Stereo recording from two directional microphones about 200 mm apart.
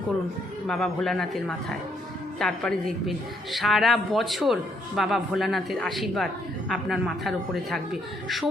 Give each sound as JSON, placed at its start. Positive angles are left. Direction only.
{"t": 0.7, "sound": "a woman's voice", "side_deg": 0}